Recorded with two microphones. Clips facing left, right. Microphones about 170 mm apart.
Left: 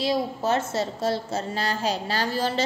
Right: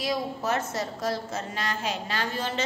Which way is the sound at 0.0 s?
30° left (ahead or behind).